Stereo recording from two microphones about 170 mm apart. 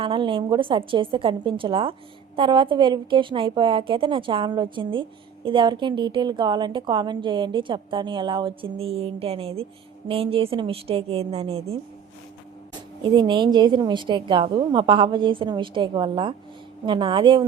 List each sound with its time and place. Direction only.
0.0 s a woman's voice: 30° right (ahead or behind)
13.0 s a woman's voice: 25° right (ahead or behind)